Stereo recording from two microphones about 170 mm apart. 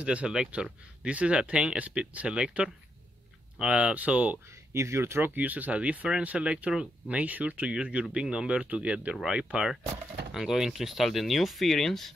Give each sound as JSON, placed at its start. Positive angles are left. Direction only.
{"t": 0.0, "sound": "speech", "side_deg": -5}